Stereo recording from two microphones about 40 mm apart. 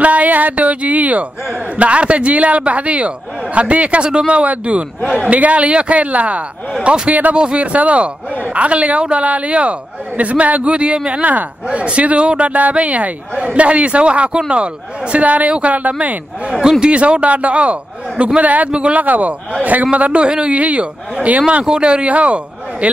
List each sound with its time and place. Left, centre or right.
0.0 s a man's voice: right
16.8 s a man's voice: right
18.7 s a man's voice: right
18.9 s a man's voice: right
21.6 s a man's voice: right